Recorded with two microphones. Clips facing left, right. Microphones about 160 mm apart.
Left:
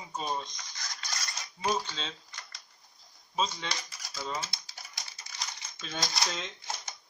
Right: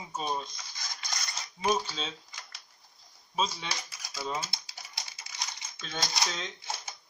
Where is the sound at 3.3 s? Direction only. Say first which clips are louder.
Even; 5° right (ahead or behind).